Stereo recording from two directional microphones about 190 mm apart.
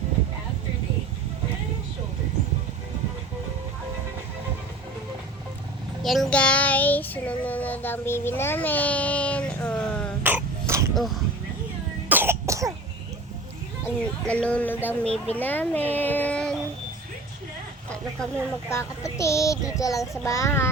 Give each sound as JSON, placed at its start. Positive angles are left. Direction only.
{"t": 6.0, "sound": "child singing", "side_deg": 0}
{"t": 10.2, "sound": "throat clearing", "side_deg": -10}
{"t": 10.9, "sound": "speech", "side_deg": 0}
{"t": 12.0, "sound": "cough", "side_deg": -10}
{"t": 13.8, "sound": "speech", "side_deg": 5}
{"t": 14.8, "sound": "child singing", "side_deg": 5}
{"t": 18.7, "sound": "child singing", "side_deg": 15}